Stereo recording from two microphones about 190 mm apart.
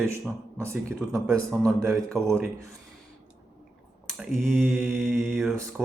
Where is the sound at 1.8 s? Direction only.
15° right (ahead or behind).